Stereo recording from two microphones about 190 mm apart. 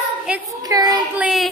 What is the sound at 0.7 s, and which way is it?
Child singing, 20° right (ahead or behind).